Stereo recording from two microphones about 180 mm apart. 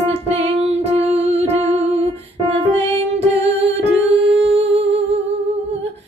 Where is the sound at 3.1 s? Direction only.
35° right (ahead or behind).